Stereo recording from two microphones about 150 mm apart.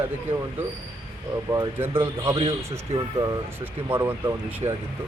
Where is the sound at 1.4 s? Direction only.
20° right (ahead or behind).